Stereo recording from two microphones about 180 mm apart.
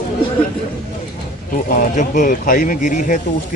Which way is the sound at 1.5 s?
50° left (ahead or behind).